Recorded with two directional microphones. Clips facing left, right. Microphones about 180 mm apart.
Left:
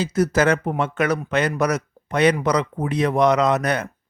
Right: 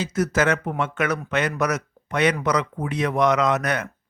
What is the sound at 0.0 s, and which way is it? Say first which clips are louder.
A man's voice: left 3 dB; 35° left (ahead or behind).